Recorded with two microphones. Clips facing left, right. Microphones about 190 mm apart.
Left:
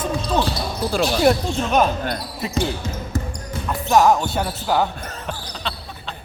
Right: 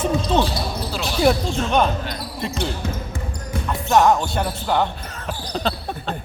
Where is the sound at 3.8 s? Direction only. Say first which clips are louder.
Left 1 dB; 5° left (ahead or behind).